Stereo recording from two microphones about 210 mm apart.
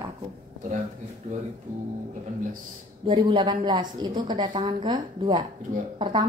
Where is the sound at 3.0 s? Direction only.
25° right (ahead or behind).